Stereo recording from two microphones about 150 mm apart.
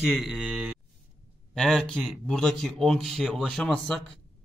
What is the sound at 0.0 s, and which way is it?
Speech, 5° right (ahead or behind).